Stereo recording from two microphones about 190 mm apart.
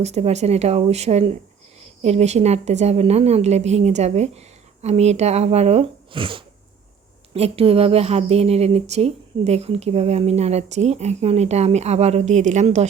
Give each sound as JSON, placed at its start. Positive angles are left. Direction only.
{"t": 0.0, "sound": "a woman's voice", "side_deg": -35}